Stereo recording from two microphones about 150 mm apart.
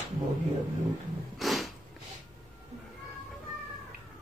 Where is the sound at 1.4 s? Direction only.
Centre (ahead or behind).